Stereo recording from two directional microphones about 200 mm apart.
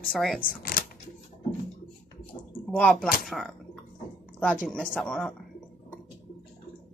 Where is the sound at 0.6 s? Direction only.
50° left (ahead or behind).